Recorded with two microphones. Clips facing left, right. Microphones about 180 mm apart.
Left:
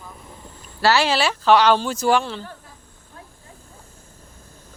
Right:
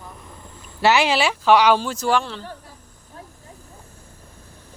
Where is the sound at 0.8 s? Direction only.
20° right (ahead or behind).